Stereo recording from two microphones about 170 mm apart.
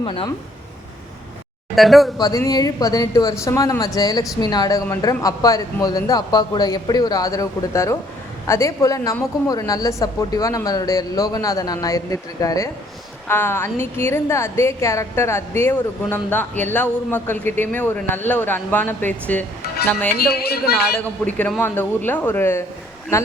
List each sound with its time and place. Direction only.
0.0 s speech: 30° left (ahead or behind)
1.7 s speech: centre (ahead or behind)
2.1 s a woman's voice: 20° left (ahead or behind)
20.1 s speech: 65° left (ahead or behind)
21.0 s a woman's voice: 10° left (ahead or behind)